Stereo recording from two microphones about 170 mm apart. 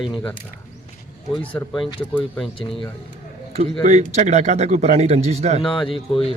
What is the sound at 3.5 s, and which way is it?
Speech, 40° right (ahead or behind).